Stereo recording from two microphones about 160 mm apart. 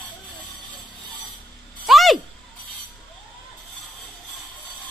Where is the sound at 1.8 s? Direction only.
Centre (ahead or behind).